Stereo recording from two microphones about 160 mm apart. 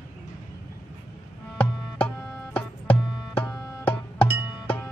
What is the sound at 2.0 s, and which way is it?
Tabla, 10° left (ahead or behind).